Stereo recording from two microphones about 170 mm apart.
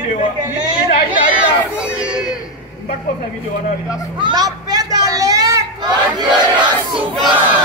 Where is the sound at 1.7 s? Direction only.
5° right (ahead or behind).